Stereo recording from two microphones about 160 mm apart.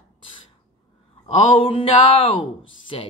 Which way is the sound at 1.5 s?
35° left (ahead or behind).